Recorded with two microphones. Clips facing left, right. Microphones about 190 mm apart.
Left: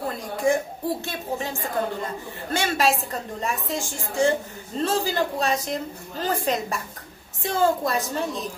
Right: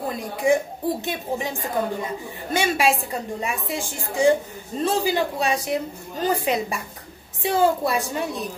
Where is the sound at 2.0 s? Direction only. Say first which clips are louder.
Right 2 dB; 10° right (ahead or behind).